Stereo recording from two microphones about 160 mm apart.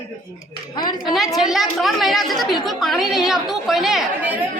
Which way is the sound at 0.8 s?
25° left (ahead or behind).